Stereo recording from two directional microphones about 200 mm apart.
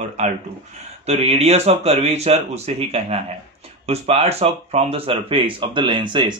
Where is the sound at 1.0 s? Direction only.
30° right (ahead or behind).